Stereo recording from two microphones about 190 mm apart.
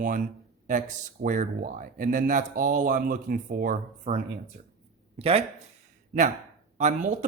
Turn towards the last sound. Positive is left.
turn(degrees=-40)  # may be behind; listen again after turning